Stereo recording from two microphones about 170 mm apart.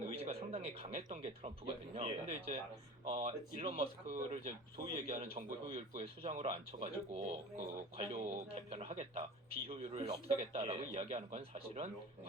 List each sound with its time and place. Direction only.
0.1 s a man's voice: 35° right (ahead or behind)